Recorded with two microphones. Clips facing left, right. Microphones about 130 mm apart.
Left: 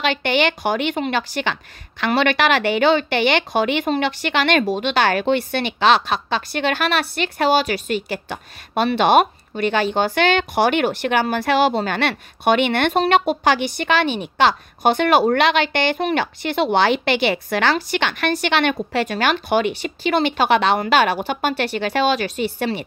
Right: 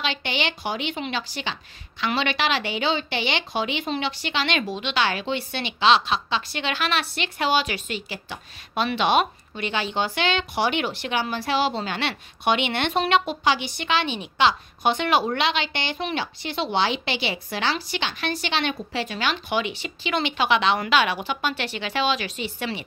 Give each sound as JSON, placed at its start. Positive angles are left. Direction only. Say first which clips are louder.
{"t": 0.0, "sound": "a woman's voice", "louder": "left 8 dB", "side_deg": 55}